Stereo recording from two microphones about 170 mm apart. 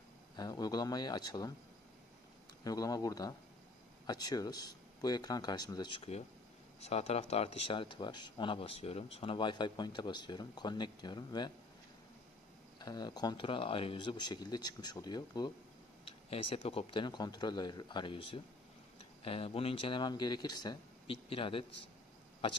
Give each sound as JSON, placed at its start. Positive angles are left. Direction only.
{"t": 0.4, "sound": "speech", "side_deg": 25}
{"t": 2.6, "sound": "speech", "side_deg": 20}
{"t": 12.7, "sound": "speech", "side_deg": 25}